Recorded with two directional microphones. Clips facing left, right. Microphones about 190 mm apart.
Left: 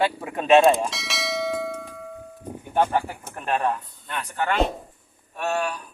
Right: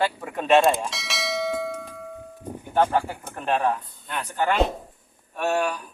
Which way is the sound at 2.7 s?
5° left (ahead or behind).